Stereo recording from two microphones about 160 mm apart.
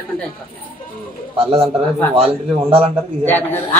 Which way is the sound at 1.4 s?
35° right (ahead or behind).